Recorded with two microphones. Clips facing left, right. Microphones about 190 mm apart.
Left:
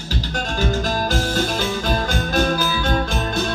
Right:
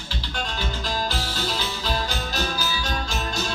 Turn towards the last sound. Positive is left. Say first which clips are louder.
# left 7 dB
turn(degrees=55)  # may be behind; listen again after turning